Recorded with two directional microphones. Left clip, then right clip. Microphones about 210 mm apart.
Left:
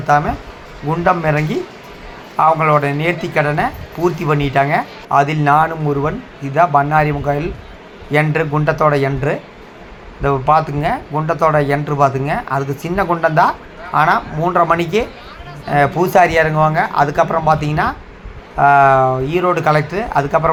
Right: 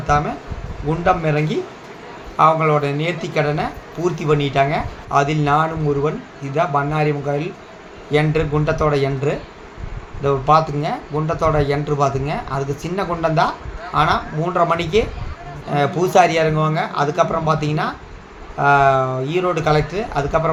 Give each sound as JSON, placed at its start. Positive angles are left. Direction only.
{"t": 0.1, "sound": "speech", "side_deg": 20}